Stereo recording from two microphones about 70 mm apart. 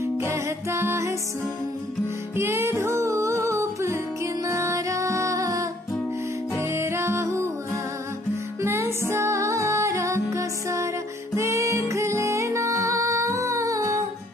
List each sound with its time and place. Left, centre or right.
0.0 s music: right
2.3 s music: right